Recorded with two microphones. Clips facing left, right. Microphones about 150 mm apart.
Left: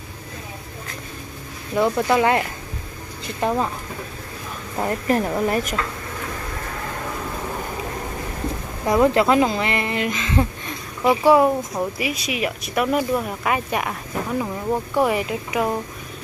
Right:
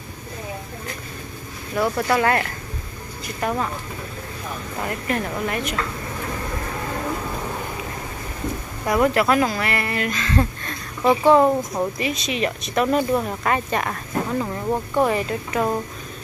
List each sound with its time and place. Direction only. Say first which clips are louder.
1.8 s speech: left 2 dB; 15° left (ahead or behind)
4.8 s a woman's voice: left 5 dB; 35° left (ahead or behind)
8.8 s speech: left 2 dB; 25° left (ahead or behind)